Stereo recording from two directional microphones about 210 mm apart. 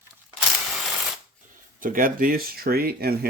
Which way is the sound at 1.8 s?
40° right (ahead or behind).